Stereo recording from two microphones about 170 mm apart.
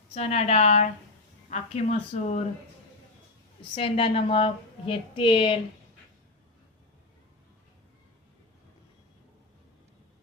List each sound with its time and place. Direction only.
0.1 s a woman's voice: 35° left (ahead or behind)
3.8 s a woman's voice: 35° left (ahead or behind)